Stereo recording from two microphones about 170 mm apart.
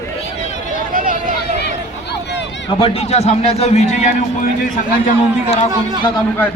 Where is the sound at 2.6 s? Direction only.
30° left (ahead or behind).